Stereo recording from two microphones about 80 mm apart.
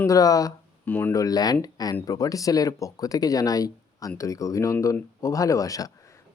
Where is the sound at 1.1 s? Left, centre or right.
Left.